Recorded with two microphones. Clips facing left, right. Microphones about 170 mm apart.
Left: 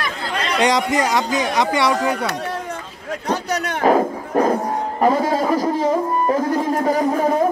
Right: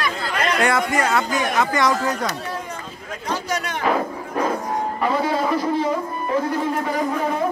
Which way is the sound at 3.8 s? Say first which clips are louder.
Left 7 dB; 40° left (ahead or behind).